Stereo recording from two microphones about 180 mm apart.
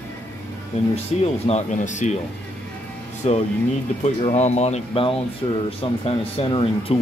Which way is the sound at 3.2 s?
35° left (ahead or behind).